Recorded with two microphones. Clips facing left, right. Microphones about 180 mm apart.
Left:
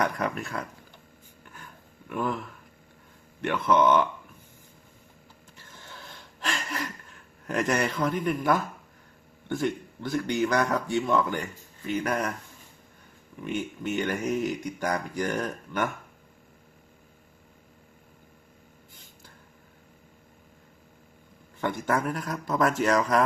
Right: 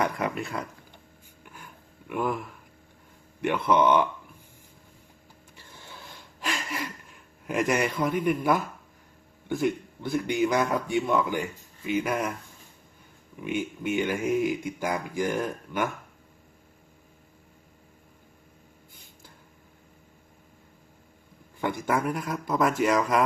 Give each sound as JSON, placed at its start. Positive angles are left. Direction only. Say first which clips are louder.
{"t": 0.0, "sound": "speech", "louder": "even", "side_deg": -10}
{"t": 2.0, "sound": "speech", "louder": "right 1 dB", "side_deg": -10}
{"t": 3.4, "sound": "speech", "louder": "even", "side_deg": -10}
{"t": 5.5, "sound": "a sound", "louder": "right 1 dB", "side_deg": -15}
{"t": 7.4, "sound": "speech", "louder": "right 1 dB", "side_deg": -5}
{"t": 8.4, "sound": "speech", "louder": "even", "side_deg": -20}
{"t": 9.6, "sound": "speech", "louder": "right 2 dB", "side_deg": -5}
{"t": 13.4, "sound": "speech", "louder": "right 1 dB", "side_deg": -10}
{"t": 21.6, "sound": "speech", "louder": "even", "side_deg": -10}